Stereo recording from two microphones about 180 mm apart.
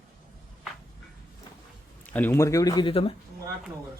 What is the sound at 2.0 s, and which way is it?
Speech, 10° left (ahead or behind).